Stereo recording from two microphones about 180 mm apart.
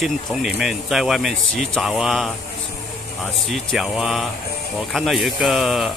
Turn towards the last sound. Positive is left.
turn(degrees=0)  # may be behind; listen again after turning